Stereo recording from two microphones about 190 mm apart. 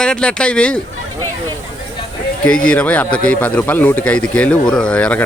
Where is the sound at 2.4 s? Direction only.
5° left (ahead or behind).